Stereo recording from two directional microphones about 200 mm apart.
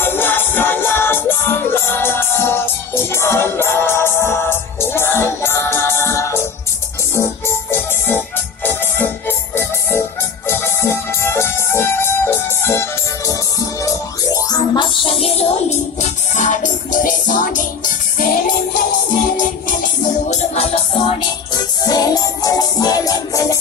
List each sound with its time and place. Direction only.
0.0 s music: 10° left (ahead or behind); by 18.3 s 40° left (ahead or behind)
19.8 s music: 35° left (ahead or behind); by 23.6 s 15° left (ahead or behind)